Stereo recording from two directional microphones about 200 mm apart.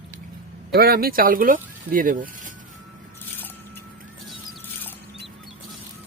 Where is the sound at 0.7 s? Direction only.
50° right (ahead or behind).